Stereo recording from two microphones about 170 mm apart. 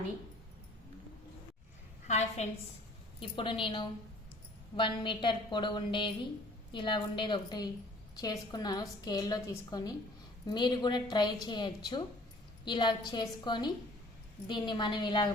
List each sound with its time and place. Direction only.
2.0 s a woman's voice: 40° left (ahead or behind)
3.2 s a woman's voice: 30° left (ahead or behind)